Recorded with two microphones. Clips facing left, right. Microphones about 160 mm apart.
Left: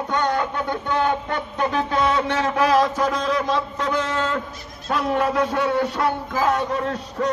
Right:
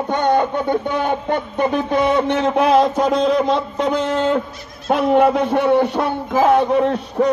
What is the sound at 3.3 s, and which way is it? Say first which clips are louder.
A man's voice: right 5 dB; 60° right (ahead or behind).